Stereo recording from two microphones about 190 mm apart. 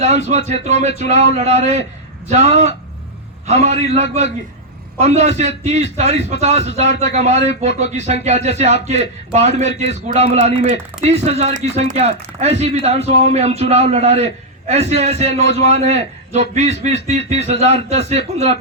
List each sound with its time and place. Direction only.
0.0 s a man's voice: 35° right (ahead or behind)